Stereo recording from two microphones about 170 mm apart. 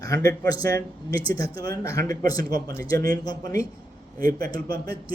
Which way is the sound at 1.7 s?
20° left (ahead or behind).